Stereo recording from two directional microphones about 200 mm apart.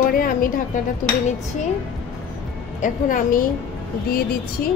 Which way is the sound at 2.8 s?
45° left (ahead or behind).